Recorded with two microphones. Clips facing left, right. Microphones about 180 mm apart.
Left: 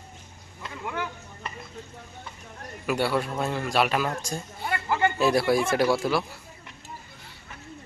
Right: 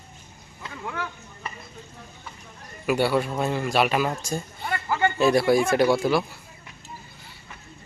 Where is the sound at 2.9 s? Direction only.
Centre (ahead or behind).